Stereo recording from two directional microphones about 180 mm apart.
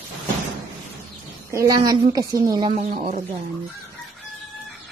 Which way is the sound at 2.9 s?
45° right (ahead or behind).